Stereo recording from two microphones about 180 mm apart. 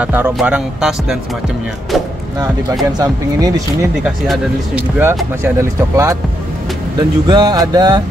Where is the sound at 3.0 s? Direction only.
20° right (ahead or behind).